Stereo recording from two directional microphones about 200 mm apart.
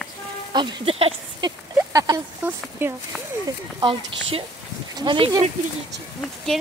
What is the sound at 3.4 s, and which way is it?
Speech, 25° right (ahead or behind).